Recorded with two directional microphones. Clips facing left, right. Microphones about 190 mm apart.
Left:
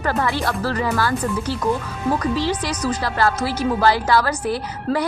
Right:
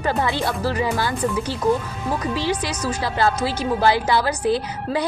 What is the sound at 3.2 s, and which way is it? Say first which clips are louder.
Speech: right 1 dB; 20° right (ahead or behind).